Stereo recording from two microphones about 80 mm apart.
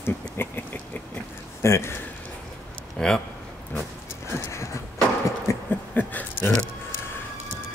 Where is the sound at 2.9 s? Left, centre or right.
Centre.